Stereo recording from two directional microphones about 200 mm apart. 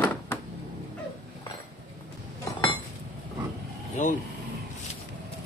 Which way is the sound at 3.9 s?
40° left (ahead or behind).